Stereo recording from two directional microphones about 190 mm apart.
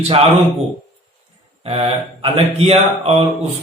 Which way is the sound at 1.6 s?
30° right (ahead or behind).